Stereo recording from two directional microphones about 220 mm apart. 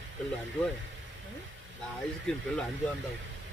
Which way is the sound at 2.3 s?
5° left (ahead or behind).